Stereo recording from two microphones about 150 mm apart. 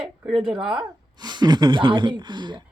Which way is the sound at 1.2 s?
30° right (ahead or behind).